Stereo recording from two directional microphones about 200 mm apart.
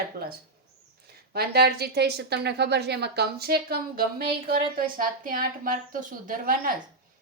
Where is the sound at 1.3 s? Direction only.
50° right (ahead or behind).